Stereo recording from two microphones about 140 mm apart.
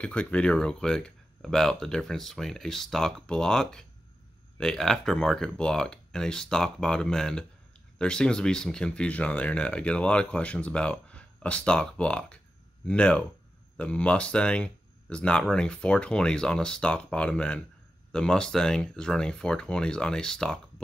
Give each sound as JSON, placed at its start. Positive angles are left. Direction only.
{"t": 0.0, "sound": "speech", "side_deg": 10}